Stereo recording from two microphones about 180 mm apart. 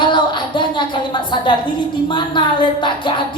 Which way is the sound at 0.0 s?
25° left (ahead or behind).